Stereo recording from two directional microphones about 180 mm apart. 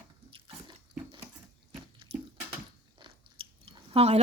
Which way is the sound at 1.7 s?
30° right (ahead or behind).